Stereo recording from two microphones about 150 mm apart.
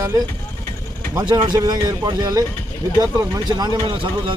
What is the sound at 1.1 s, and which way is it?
Speech, 25° right (ahead or behind).